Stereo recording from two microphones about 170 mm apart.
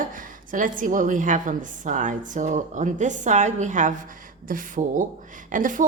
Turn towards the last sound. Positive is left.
turn(degrees=-50)  # may be behind; listen again after turning